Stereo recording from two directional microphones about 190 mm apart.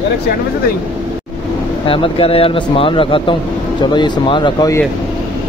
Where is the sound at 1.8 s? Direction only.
25° left (ahead or behind).